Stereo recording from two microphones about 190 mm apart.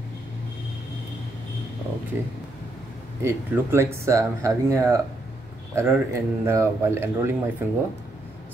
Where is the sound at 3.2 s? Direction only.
15° right (ahead or behind).